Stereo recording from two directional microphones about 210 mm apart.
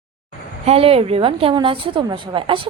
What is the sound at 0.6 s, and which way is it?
A woman's voice, 30° right (ahead or behind).